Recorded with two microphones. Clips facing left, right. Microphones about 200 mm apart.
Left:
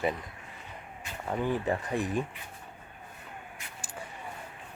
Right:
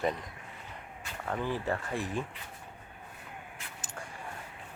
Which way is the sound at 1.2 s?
15° left (ahead or behind).